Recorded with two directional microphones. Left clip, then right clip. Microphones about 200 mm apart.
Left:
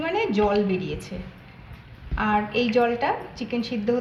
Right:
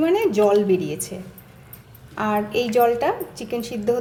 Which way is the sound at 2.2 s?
70° right (ahead or behind).